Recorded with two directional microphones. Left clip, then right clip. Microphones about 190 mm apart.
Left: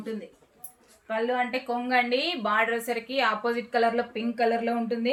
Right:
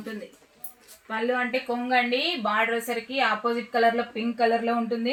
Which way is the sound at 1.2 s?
15° left (ahead or behind).